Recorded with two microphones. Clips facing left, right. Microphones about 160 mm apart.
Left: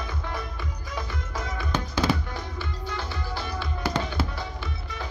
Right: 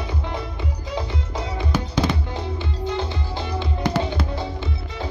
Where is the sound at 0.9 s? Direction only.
30° right (ahead or behind).